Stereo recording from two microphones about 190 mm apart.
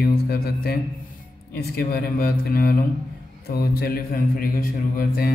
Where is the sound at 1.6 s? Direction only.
55° left (ahead or behind).